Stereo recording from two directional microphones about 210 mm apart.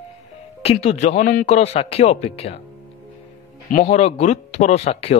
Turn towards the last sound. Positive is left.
turn(degrees=30)  # may be behind; listen again after turning